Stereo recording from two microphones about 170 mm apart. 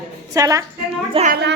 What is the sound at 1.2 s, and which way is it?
Speech, 35° right (ahead or behind).